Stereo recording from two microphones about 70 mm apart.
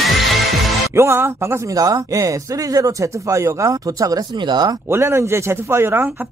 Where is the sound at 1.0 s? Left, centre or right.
Right.